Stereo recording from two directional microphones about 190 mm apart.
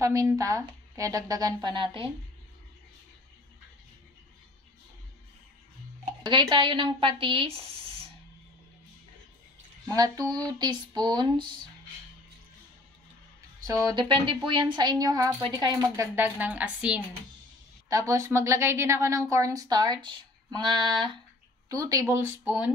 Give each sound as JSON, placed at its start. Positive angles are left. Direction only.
{"t": 0.0, "sound": "a woman's voice", "side_deg": -15}
{"t": 6.2, "sound": "a woman's voice", "side_deg": -25}
{"t": 9.8, "sound": "a woman's voice", "side_deg": -20}
{"t": 13.7, "sound": "a woman's voice", "side_deg": -20}